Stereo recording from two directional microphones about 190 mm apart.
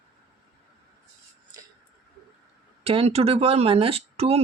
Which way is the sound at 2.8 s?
30° right (ahead or behind).